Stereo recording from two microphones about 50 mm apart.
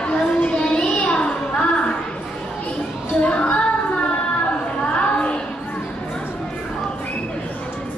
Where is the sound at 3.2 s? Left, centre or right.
Left.